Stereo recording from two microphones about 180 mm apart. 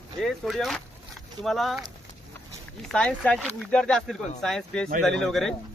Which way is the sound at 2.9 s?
5° left (ahead or behind).